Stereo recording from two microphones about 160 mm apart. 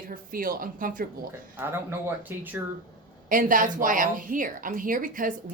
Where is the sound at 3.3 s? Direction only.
60° right (ahead or behind).